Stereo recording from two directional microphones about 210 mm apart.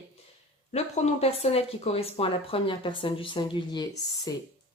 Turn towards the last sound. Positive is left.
turn(degrees=20)  # may be behind; listen again after turning